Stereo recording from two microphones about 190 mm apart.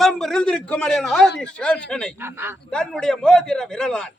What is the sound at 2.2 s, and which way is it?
Speech, 10° right (ahead or behind).